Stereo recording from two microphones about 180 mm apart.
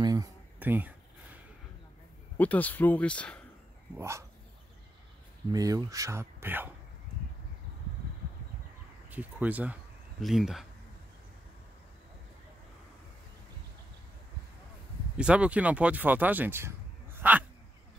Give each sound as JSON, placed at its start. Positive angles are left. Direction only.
{"t": 0.0, "sound": "a sound", "side_deg": -20}
{"t": 2.3, "sound": "speech", "side_deg": 10}
{"t": 3.9, "sound": "speech", "side_deg": -15}
{"t": 5.5, "sound": "speech", "side_deg": -20}
{"t": 9.1, "sound": "speech", "side_deg": -10}
{"t": 15.1, "sound": "speech", "side_deg": -5}